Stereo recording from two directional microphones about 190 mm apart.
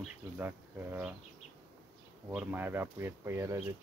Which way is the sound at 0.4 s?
10° right (ahead or behind).